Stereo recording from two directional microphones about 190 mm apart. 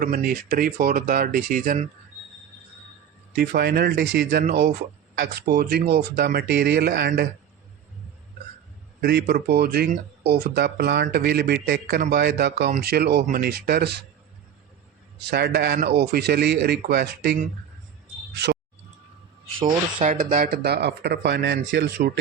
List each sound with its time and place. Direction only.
0.0 s speech: 50° right (ahead or behind)
3.3 s speech: 55° right (ahead or behind)
9.0 s speech: 55° right (ahead or behind)
15.3 s speech: 60° right (ahead or behind)
20.0 s speech: 35° right (ahead or behind)
20.3 s speech: 50° right (ahead or behind)